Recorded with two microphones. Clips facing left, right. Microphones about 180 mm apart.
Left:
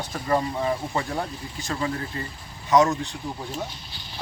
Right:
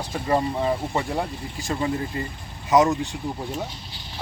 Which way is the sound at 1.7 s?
15° right (ahead or behind).